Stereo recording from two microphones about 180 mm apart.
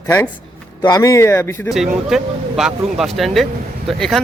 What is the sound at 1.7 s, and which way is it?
Speech, centre (ahead or behind).